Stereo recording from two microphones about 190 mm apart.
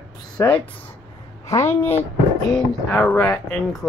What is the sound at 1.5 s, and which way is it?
A woman's voice, 15° left (ahead or behind).